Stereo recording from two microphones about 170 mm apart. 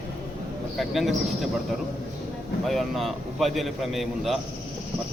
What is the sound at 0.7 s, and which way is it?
Speech, centre (ahead or behind).